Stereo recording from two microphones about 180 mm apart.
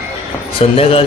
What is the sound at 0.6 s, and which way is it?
Speech, 30° left (ahead or behind).